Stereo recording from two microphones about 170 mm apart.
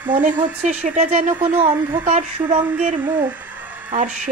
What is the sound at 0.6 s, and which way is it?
Speech, 40° right (ahead or behind).